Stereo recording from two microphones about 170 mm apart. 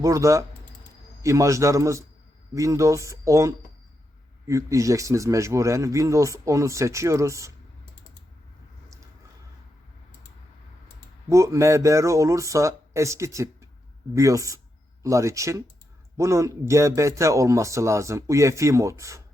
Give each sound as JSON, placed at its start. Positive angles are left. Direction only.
{"t": 0.0, "sound": "speech", "side_deg": -20}
{"t": 11.3, "sound": "speech", "side_deg": -20}